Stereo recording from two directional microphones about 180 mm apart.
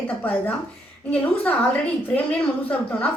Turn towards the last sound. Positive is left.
turn(degrees=5)  # may be behind; listen again after turning